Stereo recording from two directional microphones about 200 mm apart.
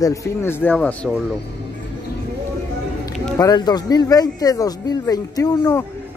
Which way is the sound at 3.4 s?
20° left (ahead or behind).